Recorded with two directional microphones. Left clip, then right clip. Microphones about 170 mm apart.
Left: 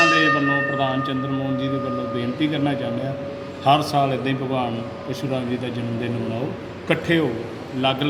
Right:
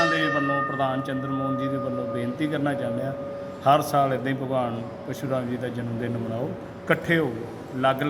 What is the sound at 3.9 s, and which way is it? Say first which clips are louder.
Speech: left 2 dB; 15° right (ahead or behind).